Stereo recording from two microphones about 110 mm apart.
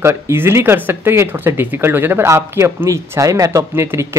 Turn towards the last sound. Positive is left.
turn(degrees=-25)  # may be behind; listen again after turning